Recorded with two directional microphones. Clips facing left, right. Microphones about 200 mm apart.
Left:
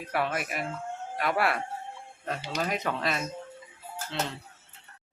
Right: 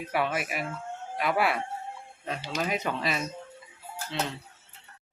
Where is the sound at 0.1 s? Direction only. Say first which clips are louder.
Right 1 dB; centre (ahead or behind).